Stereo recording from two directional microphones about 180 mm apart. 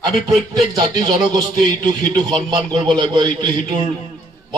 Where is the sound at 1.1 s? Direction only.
20° right (ahead or behind).